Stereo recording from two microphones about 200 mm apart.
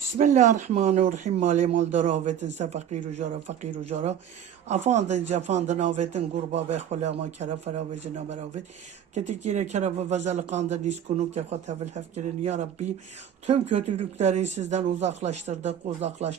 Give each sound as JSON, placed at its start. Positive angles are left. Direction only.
{"t": 0.2, "sound": "speech", "side_deg": -35}
{"t": 9.1, "sound": "speech", "side_deg": -35}